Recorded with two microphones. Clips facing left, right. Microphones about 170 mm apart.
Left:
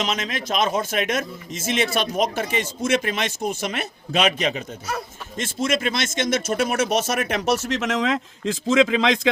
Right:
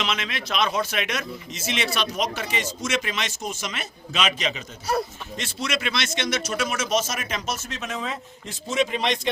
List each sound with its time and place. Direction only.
0.0 s a man's voice: 40° left (ahead or behind); by 9.3 s 90° left